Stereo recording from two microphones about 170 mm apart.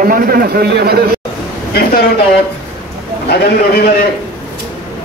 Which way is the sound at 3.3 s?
65° left (ahead or behind).